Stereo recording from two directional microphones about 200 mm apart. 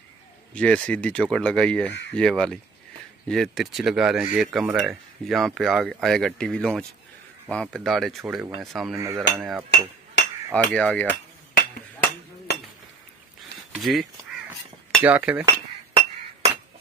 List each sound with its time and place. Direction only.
0.6 s speech: 5° left (ahead or behind)
8.9 s cutlery: 15° right (ahead or behind)
10.5 s speech: 5° left (ahead or behind)
11.5 s chink: 45° left (ahead or behind)
13.7 s speech: centre (ahead or behind)
15.0 s cutlery: 5° right (ahead or behind)